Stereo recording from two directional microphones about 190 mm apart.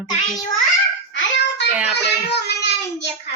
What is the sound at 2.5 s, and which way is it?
Child singing, 65° left (ahead or behind).